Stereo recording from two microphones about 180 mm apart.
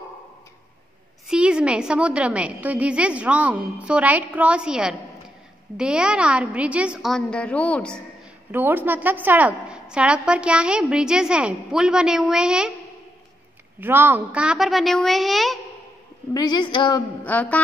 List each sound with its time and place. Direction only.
1.2 s a woman's voice: 5° right (ahead or behind)
8.5 s a woman's voice: 10° right (ahead or behind)
13.7 s a woman's voice: 10° right (ahead or behind)
16.3 s a woman's voice: 25° left (ahead or behind)
17.2 s a woman's voice: 10° left (ahead or behind)